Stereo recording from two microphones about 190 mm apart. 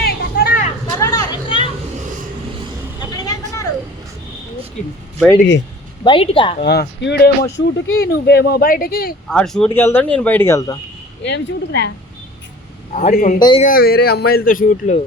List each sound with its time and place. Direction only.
0.0 s a sound: 55° left (ahead or behind)
0.9 s vehicle: 20° left (ahead or behind)
3.0 s vehicle: 20° left (ahead or behind)
6.1 s speech: 30° left (ahead or behind)
6.6 s speech: 60° left (ahead or behind)
9.3 s speech: 5° left (ahead or behind)
11.2 s speech: 65° left (ahead or behind)
12.9 s a man's voice: 35° left (ahead or behind)